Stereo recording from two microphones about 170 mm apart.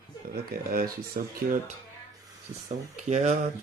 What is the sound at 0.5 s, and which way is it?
Speech, 60° right (ahead or behind).